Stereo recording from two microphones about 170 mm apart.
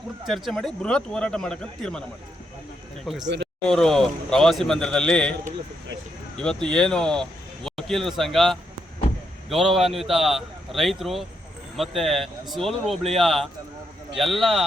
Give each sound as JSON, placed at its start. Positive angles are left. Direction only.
{"t": 0.3, "sound": "speech", "side_deg": 0}
{"t": 3.2, "sound": "speech", "side_deg": -90}
{"t": 3.7, "sound": "speech", "side_deg": 5}
{"t": 6.3, "sound": "speech", "side_deg": 5}